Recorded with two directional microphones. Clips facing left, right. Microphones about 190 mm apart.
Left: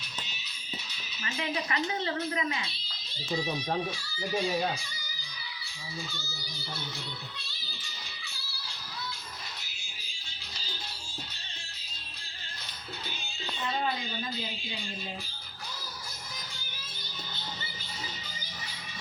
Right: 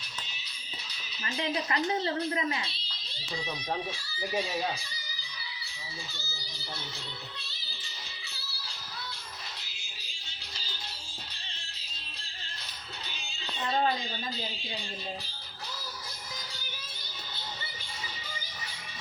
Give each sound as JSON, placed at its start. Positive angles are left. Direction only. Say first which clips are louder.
{"t": 1.2, "sound": "a woman's voice", "louder": "right 1 dB", "side_deg": -35}
{"t": 13.7, "sound": "a woman's voice", "louder": "right 4 dB", "side_deg": -35}